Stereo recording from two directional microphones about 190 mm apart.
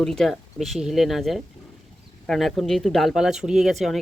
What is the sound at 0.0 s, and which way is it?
Speech, centre (ahead or behind).